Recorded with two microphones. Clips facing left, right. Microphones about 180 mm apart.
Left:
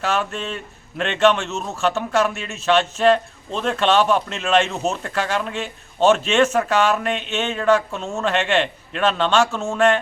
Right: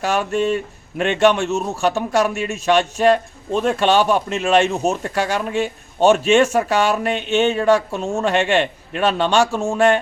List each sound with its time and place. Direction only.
0.0 s speech: 10° right (ahead or behind)
7.1 s a sound: 35° right (ahead or behind)
7.9 s speech: 15° right (ahead or behind)